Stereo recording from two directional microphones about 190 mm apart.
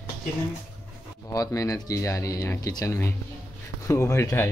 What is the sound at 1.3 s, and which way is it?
Speech, 20° left (ahead or behind).